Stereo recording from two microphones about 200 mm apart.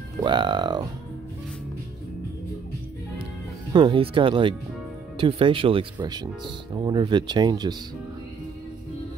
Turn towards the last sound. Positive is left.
turn(degrees=-20)  # may be behind; listen again after turning